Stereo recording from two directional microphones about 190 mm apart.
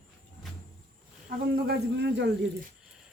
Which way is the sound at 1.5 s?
60° right (ahead or behind).